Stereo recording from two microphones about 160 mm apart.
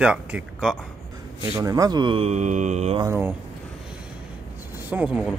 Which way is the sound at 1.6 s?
20° right (ahead or behind).